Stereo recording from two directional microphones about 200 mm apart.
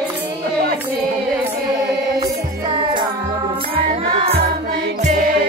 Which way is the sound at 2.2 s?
25° right (ahead or behind).